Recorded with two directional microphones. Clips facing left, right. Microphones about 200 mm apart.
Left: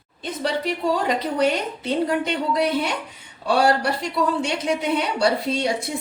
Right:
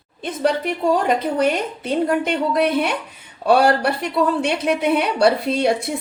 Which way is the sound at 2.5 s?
60° right (ahead or behind).